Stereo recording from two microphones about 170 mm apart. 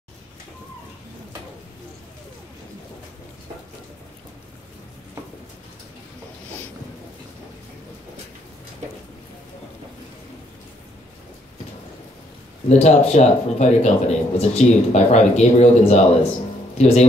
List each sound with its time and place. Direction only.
12.6 s speech: 40° left (ahead or behind)